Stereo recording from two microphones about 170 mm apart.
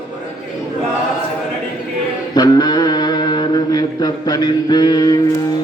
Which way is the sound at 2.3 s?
25° left (ahead or behind).